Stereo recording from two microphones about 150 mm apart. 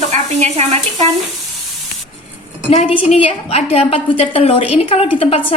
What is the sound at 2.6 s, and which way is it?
A woman's voice, 35° left (ahead or behind).